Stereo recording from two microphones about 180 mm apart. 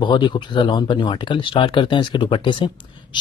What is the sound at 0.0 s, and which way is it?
Speech, 25° left (ahead or behind).